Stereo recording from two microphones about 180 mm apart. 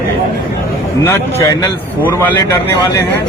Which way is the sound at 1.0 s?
15° left (ahead or behind).